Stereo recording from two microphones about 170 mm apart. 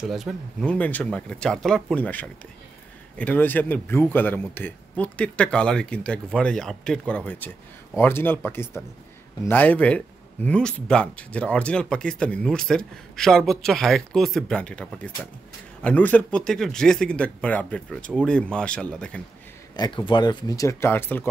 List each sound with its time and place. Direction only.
0.0 s speech: centre (ahead or behind)
19.8 s speech: 30° left (ahead or behind); by 21.3 s 15° left (ahead or behind)